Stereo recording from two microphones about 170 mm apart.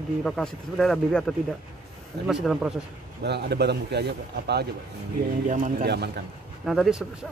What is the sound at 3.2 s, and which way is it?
A man's voice, 75° right (ahead or behind).